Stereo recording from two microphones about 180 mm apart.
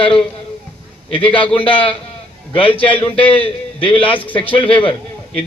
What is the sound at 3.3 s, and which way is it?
Speech, 30° left (ahead or behind).